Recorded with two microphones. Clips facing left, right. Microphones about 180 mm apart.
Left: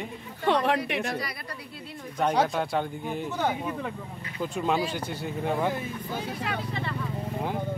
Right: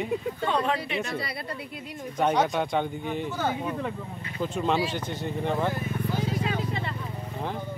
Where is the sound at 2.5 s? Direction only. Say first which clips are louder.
Right 1 dB; 5° left (ahead or behind).